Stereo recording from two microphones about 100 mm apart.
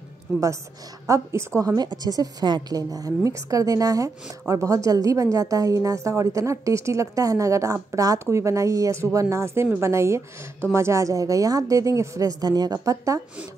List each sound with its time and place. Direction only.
1.0 s a woman's voice: 30° right (ahead or behind)
1.8 s a woman's voice: 40° right (ahead or behind)